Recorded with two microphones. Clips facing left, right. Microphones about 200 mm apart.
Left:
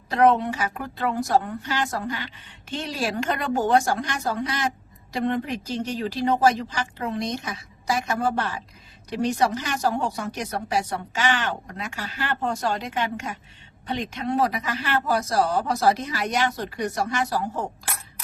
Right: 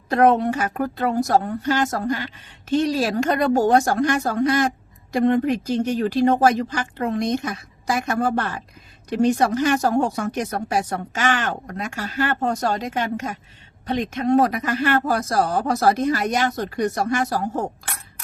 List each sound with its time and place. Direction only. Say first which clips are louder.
0.1 s a woman's voice: right 3 dB; 50° right (ahead or behind)